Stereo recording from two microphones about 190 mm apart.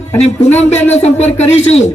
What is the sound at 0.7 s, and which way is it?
Speech, 35° left (ahead or behind).